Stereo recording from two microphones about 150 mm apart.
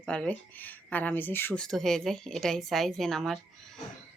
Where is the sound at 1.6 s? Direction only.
5° left (ahead or behind).